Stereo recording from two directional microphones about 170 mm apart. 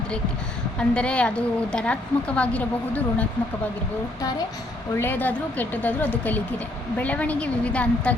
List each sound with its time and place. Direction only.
0.8 s speech: 5° left (ahead or behind)
4.9 s speech: 10° left (ahead or behind)